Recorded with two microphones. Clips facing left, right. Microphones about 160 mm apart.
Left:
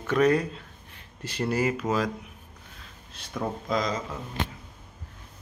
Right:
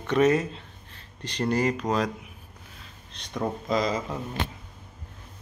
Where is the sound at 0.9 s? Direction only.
10° left (ahead or behind).